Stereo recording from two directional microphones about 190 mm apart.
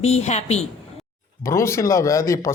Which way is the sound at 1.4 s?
15° left (ahead or behind).